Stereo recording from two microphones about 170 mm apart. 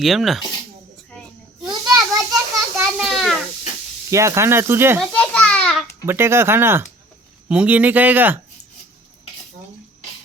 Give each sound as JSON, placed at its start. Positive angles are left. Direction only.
{"t": 0.0, "sound": "speech", "side_deg": 0}
{"t": 1.6, "sound": "children playing", "side_deg": -20}
{"t": 3.0, "sound": "a sound", "side_deg": 0}
{"t": 4.1, "sound": "speech", "side_deg": -15}
{"t": 4.9, "sound": "babbling", "side_deg": 5}
{"t": 6.1, "sound": "speech", "side_deg": -15}